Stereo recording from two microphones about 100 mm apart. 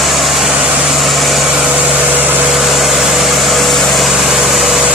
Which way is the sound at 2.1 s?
20° right (ahead or behind).